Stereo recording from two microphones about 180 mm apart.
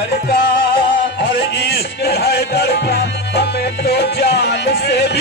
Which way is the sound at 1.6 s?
65° left (ahead or behind).